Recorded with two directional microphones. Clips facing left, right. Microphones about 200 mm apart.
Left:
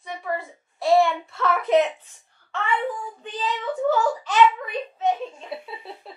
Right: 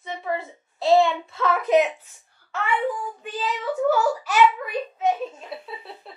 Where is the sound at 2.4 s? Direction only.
5° right (ahead or behind).